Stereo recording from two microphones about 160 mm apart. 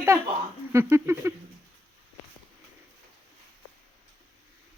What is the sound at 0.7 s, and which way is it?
Speech, 15° right (ahead or behind).